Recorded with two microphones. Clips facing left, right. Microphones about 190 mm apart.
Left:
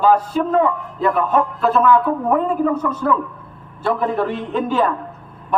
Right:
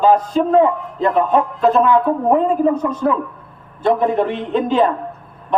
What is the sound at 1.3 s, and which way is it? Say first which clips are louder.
A woman's voice: right 3 dB; 15° right (ahead or behind).